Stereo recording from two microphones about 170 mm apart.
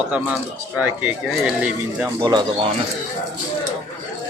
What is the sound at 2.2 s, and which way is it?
Speech, 25° right (ahead or behind).